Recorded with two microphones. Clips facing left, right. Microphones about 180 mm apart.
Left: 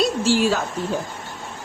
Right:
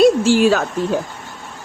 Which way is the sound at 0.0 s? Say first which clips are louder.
Right 7 dB; 55° right (ahead or behind).